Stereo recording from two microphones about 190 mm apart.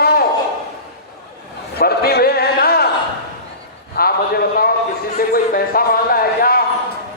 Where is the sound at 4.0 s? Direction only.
55° left (ahead or behind).